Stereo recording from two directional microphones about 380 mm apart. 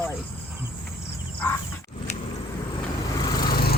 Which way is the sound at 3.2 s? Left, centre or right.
Centre.